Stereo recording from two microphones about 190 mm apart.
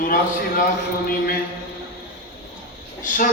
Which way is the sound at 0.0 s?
45° left (ahead or behind).